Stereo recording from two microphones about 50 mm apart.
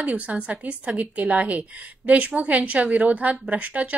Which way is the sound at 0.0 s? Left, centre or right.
Right.